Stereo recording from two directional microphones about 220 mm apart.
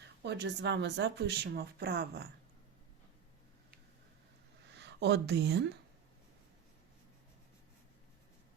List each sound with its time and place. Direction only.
0.2 s speech: 50° right (ahead or behind)
4.7 s speech: 50° right (ahead or behind)